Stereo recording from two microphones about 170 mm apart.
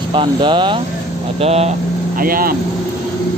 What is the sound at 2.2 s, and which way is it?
Speech, 60° right (ahead or behind).